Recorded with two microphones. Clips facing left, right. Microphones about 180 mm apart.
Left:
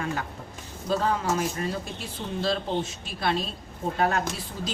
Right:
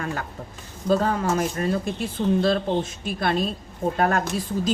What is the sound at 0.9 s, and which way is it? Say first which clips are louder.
Speech: right 4 dB; 50° right (ahead or behind).